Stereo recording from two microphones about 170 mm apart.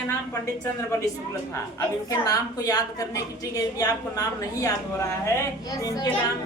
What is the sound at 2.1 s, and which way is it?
A woman's voice, 20° left (ahead or behind).